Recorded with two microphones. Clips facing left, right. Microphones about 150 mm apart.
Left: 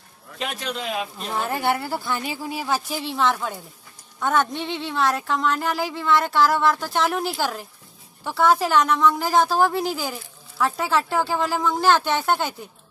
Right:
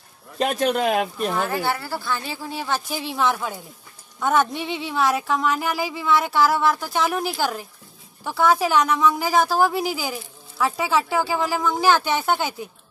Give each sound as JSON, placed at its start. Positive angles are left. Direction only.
{"t": 0.4, "sound": "speech", "side_deg": -50}
{"t": 1.5, "sound": "a woman's voice", "side_deg": 20}